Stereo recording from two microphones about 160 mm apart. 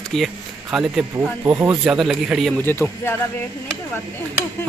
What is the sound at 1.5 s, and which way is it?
Speech, 15° right (ahead or behind).